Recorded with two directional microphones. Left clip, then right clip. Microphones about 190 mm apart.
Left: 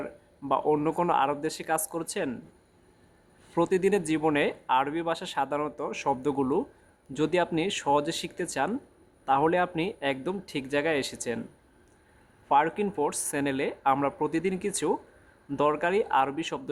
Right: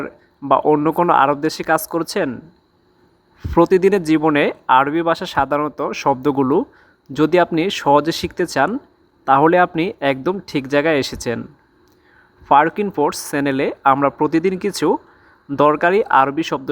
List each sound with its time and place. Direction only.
0.0 s speech: 30° right (ahead or behind)
3.5 s speech: 30° right (ahead or behind)
12.5 s speech: 30° right (ahead or behind)